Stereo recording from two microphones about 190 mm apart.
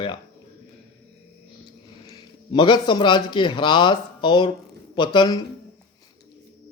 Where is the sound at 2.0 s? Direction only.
20° left (ahead or behind).